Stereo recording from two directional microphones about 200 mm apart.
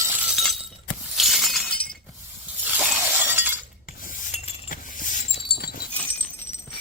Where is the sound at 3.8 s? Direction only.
40° left (ahead or behind).